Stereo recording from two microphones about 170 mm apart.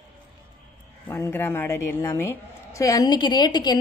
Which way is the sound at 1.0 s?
15° left (ahead or behind).